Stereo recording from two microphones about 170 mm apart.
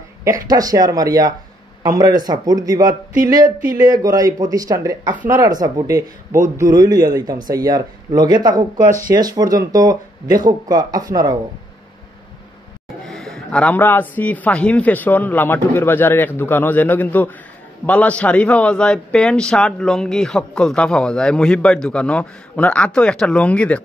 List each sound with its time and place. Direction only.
0.5 s speech: 20° right (ahead or behind)
13.0 s a man's voice: centre (ahead or behind)